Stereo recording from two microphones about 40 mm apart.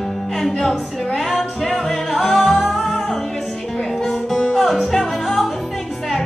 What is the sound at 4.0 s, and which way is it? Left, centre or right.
Music, centre.